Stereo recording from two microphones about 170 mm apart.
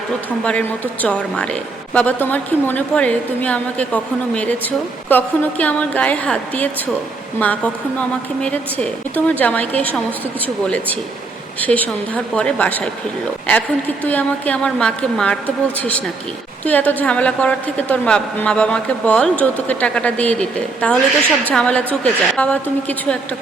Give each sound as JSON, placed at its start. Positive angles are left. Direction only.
{"t": 1.0, "sound": "a woman's voice", "side_deg": 5}